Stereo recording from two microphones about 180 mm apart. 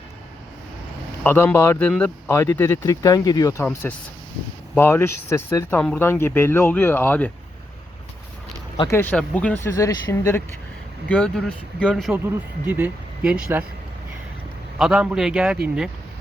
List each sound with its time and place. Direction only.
1.2 s speech: 10° left (ahead or behind)
8.9 s speech: 10° left (ahead or behind)
12.6 s speech: 10° right (ahead or behind)
14.8 s speech: 5° right (ahead or behind)